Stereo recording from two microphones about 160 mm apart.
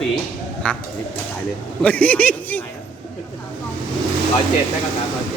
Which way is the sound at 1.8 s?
10° left (ahead or behind).